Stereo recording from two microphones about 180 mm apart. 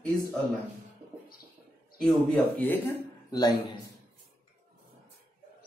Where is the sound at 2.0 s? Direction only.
5° left (ahead or behind).